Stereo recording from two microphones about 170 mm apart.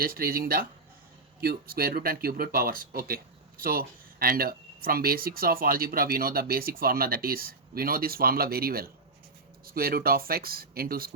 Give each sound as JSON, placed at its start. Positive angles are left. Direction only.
{"t": 0.0, "sound": "speech", "side_deg": -60}